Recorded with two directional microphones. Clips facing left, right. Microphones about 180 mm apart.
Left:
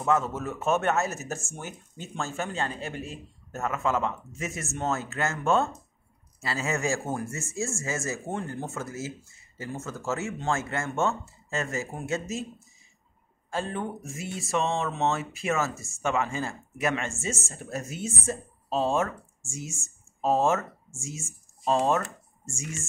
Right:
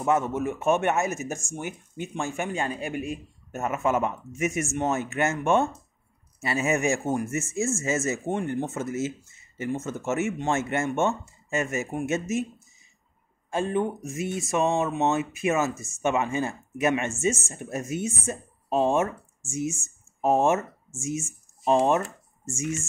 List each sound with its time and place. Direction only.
0.0 s speech: 20° right (ahead or behind)
22.0 s a sound: centre (ahead or behind)
22.6 s speech: 20° right (ahead or behind)